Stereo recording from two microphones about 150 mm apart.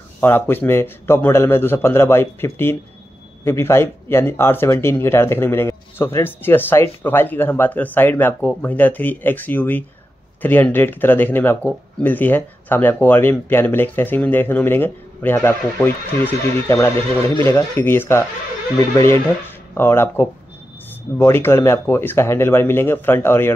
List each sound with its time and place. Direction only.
0.2 s speech: 15° left (ahead or behind)